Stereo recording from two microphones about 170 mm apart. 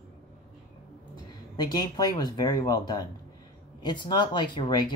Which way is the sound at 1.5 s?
25° left (ahead or behind).